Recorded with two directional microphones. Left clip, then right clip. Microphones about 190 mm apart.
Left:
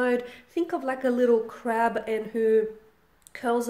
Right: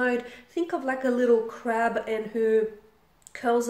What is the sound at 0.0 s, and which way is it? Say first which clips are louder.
A woman's voice: left 1 dB; 35° left (ahead or behind).